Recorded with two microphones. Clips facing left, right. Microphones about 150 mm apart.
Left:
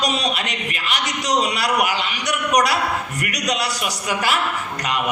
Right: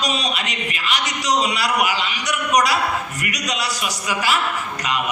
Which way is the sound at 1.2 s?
55° left (ahead or behind).